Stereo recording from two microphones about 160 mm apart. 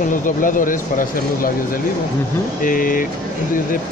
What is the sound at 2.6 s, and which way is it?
Speech, 60° left (ahead or behind).